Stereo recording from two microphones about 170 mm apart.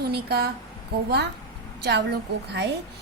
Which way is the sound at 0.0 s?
70° right (ahead or behind).